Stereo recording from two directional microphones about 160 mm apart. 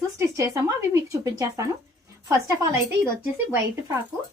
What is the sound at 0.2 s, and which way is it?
Speech, 20° right (ahead or behind).